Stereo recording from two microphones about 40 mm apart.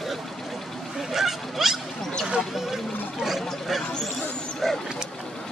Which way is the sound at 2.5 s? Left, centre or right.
Centre.